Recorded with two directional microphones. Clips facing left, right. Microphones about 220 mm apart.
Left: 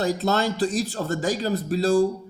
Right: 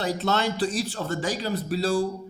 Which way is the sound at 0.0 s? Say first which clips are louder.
Left 3 dB; 40° left (ahead or behind).